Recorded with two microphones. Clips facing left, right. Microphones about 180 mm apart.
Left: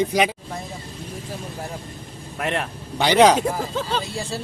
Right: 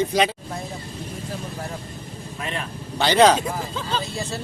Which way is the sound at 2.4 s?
65° left (ahead or behind).